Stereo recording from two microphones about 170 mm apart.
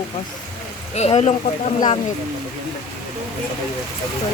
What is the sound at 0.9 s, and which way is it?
Speech, 40° left (ahead or behind).